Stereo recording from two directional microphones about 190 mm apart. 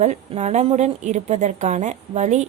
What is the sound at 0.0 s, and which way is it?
A woman's voice, 35° right (ahead or behind).